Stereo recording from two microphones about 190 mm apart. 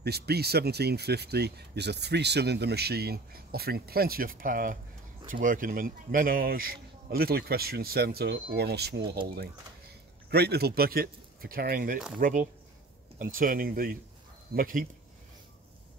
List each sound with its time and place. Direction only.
0.0 s speech: 55° right (ahead or behind)
10.3 s speech: 55° right (ahead or behind)